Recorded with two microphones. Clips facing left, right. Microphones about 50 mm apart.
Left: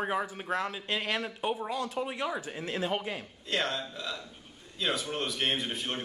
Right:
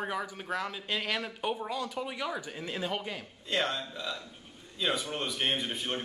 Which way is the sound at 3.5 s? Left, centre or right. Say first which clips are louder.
Even; centre.